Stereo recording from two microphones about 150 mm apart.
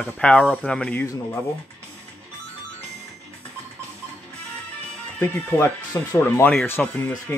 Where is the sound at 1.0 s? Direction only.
20° left (ahead or behind).